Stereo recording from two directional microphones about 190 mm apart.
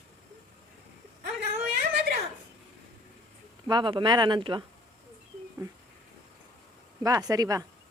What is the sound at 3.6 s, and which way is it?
Speech, 25° right (ahead or behind).